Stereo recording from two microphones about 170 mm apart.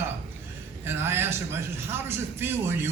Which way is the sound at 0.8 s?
15° right (ahead or behind).